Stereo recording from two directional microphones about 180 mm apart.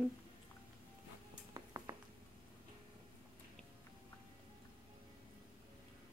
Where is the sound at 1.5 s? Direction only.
20° right (ahead or behind).